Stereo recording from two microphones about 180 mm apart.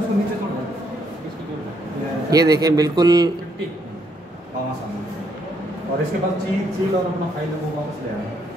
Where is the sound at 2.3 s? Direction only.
20° right (ahead or behind).